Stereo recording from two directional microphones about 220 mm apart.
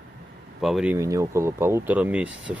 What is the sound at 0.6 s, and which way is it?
Speech, 5° right (ahead or behind).